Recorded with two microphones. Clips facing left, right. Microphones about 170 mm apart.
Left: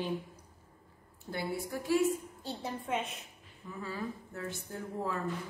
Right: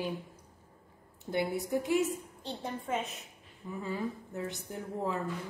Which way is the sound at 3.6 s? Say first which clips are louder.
Right 3 dB; 20° right (ahead or behind).